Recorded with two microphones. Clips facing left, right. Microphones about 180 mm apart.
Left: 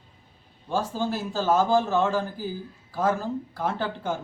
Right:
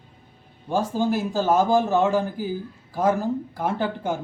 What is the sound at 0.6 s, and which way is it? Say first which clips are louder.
A man's voice: right 4 dB; 15° right (ahead or behind).